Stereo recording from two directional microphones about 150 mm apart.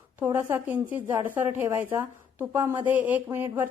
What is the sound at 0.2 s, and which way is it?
A woman's voice, 15° right (ahead or behind).